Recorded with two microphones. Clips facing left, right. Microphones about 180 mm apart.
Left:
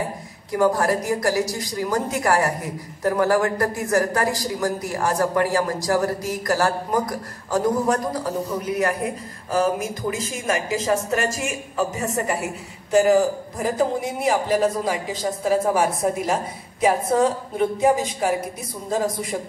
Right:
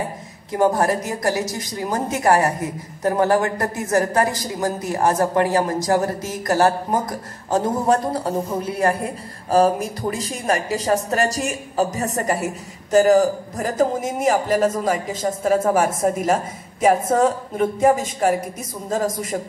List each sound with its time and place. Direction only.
0.5 s a woman's voice: 20° right (ahead or behind); by 19.3 s 45° right (ahead or behind)